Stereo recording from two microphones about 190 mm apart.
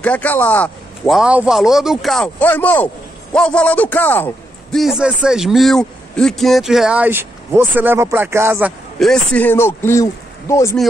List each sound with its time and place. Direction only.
0.0 s a man's voice: 10° left (ahead or behind)
4.7 s a man's voice: centre (ahead or behind)
9.0 s a man's voice: 5° left (ahead or behind)